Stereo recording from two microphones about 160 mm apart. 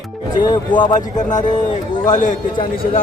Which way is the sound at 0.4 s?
25° left (ahead or behind).